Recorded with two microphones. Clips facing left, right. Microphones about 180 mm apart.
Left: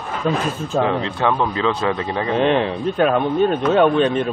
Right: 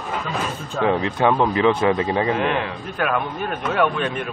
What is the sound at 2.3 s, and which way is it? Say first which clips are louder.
Speech: left 5 dB; 25° left (ahead or behind).